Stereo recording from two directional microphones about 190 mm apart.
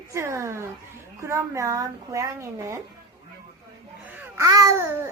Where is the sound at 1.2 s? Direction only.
15° right (ahead or behind).